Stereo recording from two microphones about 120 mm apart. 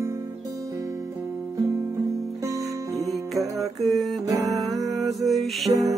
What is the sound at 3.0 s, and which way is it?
Music, centre (ahead or behind).